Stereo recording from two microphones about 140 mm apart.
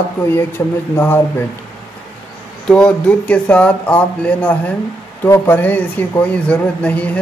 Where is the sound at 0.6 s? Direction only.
20° left (ahead or behind).